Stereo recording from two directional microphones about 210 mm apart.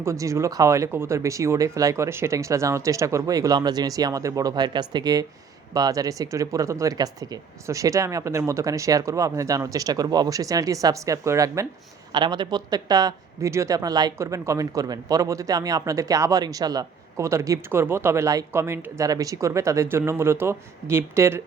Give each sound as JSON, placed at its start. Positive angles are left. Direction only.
{"t": 0.0, "sound": "speech", "side_deg": -15}